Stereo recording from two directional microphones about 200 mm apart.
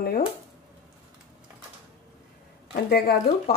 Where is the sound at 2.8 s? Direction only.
50° left (ahead or behind).